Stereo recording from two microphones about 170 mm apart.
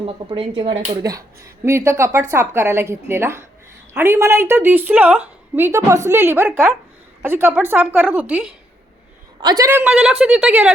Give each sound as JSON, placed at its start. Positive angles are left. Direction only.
{"t": 0.0, "sound": "speech", "side_deg": -35}
{"t": 1.6, "sound": "a woman's voice", "side_deg": -15}
{"t": 9.4, "sound": "a woman's voice", "side_deg": -20}